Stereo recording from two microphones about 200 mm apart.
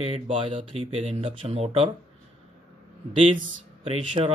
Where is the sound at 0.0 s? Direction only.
30° right (ahead or behind).